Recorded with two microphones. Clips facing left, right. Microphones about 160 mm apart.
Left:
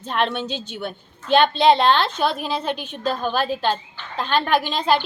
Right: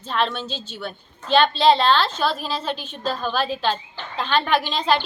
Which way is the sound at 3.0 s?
50° left (ahead or behind).